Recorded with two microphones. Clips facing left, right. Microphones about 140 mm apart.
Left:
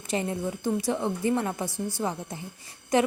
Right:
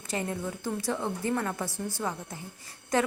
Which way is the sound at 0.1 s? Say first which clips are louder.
Left 4 dB; 20° left (ahead or behind).